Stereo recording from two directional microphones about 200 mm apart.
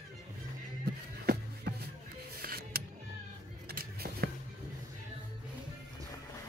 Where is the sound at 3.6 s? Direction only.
50° right (ahead or behind).